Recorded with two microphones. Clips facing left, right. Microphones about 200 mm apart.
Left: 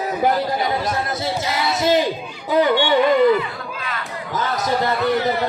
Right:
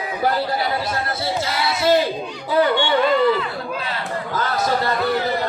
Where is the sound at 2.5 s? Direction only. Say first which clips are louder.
Left 2 dB; 15° left (ahead or behind).